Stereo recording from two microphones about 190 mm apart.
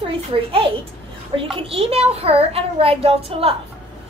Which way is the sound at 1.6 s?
30° right (ahead or behind).